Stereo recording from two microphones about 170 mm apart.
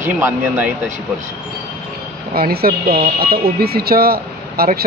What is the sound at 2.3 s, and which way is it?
Speech, 60° right (ahead or behind).